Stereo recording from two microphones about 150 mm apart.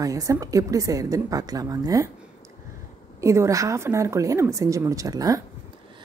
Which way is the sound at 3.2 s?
20° right (ahead or behind).